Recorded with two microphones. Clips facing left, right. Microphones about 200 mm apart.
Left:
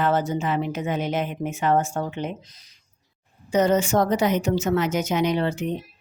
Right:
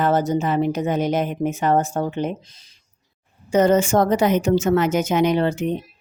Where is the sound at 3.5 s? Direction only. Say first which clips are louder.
Right 3 dB; 50° right (ahead or behind).